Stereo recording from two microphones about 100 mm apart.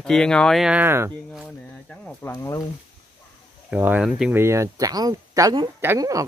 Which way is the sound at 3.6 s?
15° right (ahead or behind).